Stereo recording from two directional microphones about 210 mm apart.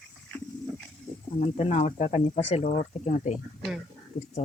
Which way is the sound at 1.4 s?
35° left (ahead or behind).